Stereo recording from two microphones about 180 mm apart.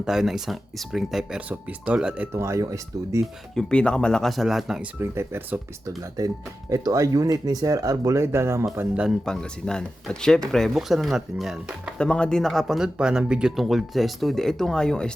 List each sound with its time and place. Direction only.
0.0 s speech: 5° right (ahead or behind)
3.5 s speech: 5° left (ahead or behind)